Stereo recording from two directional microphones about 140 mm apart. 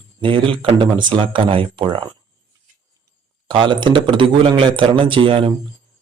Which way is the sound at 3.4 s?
35° right (ahead or behind).